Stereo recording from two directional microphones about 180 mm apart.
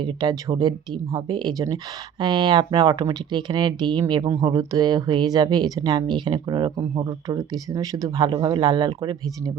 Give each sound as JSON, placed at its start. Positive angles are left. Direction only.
{"t": 0.0, "sound": "speech", "side_deg": -20}